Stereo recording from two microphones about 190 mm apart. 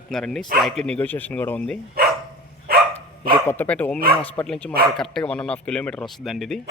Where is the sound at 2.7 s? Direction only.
55° right (ahead or behind).